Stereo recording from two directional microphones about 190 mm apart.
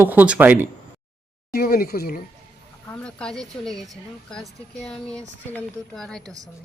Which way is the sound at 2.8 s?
5° left (ahead or behind).